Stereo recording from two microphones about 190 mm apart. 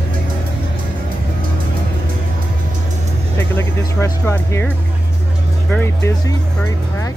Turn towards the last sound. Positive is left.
turn(degrees=10)  # may be behind; listen again after turning